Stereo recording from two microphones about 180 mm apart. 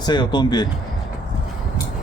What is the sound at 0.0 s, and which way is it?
Speech, 25° left (ahead or behind).